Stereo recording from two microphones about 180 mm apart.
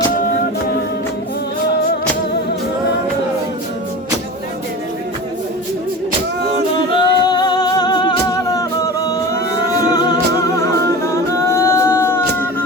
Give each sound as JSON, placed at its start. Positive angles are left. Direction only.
{"t": 6.7, "sound": "music", "side_deg": 25}
{"t": 11.0, "sound": "singing", "side_deg": 15}